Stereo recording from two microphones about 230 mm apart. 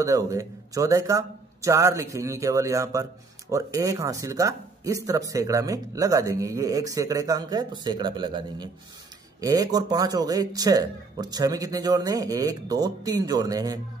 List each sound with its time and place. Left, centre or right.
0.0 s speech: centre